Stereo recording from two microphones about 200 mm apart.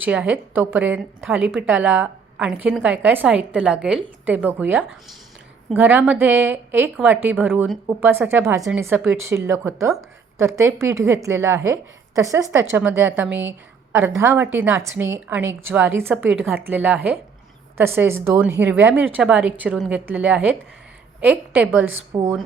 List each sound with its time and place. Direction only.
0.0 s a woman's voice: 5° right (ahead or behind)